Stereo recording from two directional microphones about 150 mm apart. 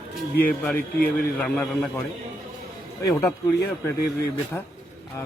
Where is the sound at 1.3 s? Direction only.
5° left (ahead or behind).